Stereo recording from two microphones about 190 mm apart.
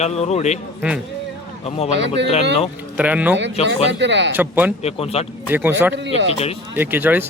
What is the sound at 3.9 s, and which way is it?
Speech, 70° right (ahead or behind).